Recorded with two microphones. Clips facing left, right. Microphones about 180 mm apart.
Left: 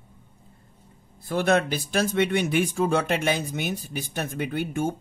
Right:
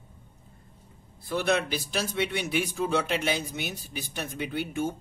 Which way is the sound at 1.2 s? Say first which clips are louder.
Left 4 dB; 50° left (ahead or behind).